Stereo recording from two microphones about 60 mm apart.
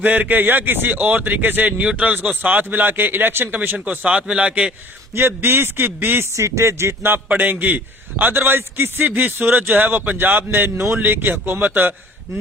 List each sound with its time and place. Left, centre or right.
0.0 s a man's voice: right
4.1 s a man's voice: centre
5.1 s a man's voice: right
6.3 s speech: right
7.3 s a man's voice: right